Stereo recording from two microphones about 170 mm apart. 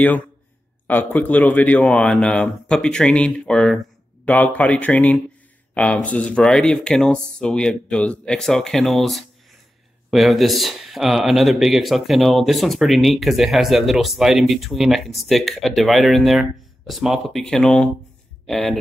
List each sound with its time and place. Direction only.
0.8 s speech: 10° left (ahead or behind)